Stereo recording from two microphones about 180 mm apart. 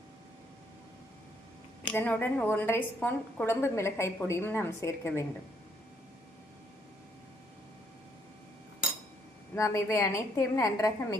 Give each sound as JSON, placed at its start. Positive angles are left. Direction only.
{"t": 1.9, "sound": "a woman's voice", "side_deg": 10}
{"t": 9.6, "sound": "a woman's voice", "side_deg": 15}